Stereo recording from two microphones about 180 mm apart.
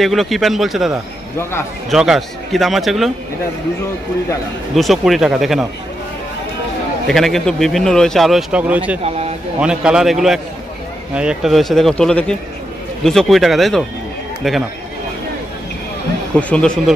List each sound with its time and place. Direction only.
0.0 s a man's voice: centre (ahead or behind)
1.4 s speech: 15° left (ahead or behind)
1.9 s a man's voice: centre (ahead or behind)
4.7 s a man's voice: centre (ahead or behind)
7.1 s a man's voice: centre (ahead or behind)
9.0 s a sound: 35° right (ahead or behind)
9.6 s a man's voice: 5° right (ahead or behind)
11.1 s a man's voice: 5° right (ahead or behind)
16.3 s a man's voice: 5° left (ahead or behind)